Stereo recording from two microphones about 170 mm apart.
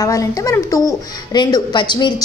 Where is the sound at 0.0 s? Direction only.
20° left (ahead or behind).